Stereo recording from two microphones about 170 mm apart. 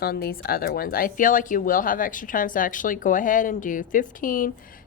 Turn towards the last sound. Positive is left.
turn(degrees=55)  # may be behind; listen again after turning